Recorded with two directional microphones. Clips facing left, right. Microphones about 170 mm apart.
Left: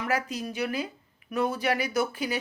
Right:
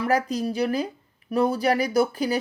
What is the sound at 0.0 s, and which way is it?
Speech, 35° right (ahead or behind).